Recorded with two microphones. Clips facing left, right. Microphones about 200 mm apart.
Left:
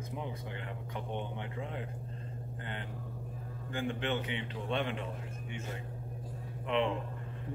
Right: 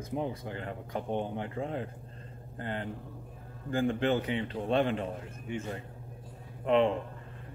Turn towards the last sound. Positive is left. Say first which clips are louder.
# right 6 dB
turn(degrees=-40)  # may be behind; listen again after turning